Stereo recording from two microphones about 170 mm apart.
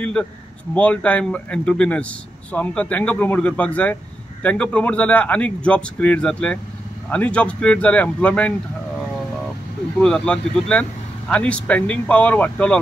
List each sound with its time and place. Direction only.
0.0 s speech: 5° left (ahead or behind)
9.9 s speech: 5° left (ahead or behind)